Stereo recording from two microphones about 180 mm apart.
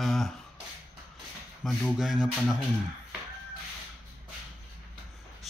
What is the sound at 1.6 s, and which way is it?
Speech, centre (ahead or behind).